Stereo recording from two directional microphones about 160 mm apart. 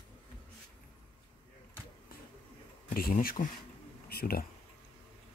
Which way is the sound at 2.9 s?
65° left (ahead or behind).